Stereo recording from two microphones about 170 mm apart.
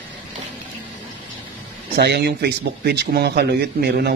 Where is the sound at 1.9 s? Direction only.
75° right (ahead or behind).